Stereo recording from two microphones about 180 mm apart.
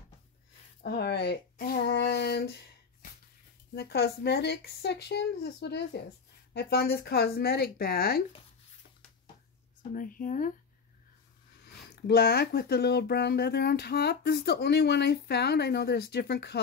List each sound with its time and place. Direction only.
0.8 s speech: 65° left (ahead or behind)
9.9 s speech: 50° left (ahead or behind)
11.9 s speech: 60° left (ahead or behind)